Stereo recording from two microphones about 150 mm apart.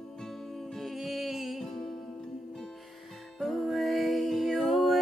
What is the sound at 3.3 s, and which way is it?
Music, centre (ahead or behind).